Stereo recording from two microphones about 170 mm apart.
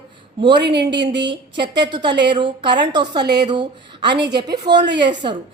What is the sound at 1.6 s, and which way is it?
A woman's voice, 25° right (ahead or behind).